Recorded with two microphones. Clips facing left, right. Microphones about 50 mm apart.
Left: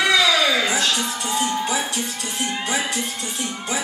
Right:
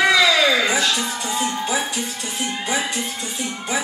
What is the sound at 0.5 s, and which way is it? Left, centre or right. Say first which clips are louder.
Speech: right 2 dB; right.